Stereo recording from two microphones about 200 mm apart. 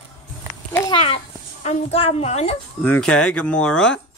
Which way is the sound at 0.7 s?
20° left (ahead or behind).